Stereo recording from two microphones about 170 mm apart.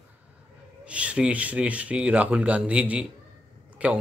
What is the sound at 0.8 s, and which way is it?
Speech, 5° right (ahead or behind).